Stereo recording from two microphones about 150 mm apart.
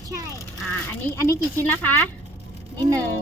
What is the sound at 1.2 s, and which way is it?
Speech, 15° left (ahead or behind).